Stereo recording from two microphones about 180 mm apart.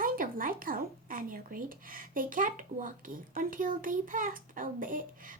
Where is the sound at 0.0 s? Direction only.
50° right (ahead or behind).